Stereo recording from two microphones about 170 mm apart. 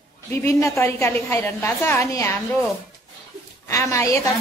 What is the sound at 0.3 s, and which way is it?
A woman's voice, 15° left (ahead or behind).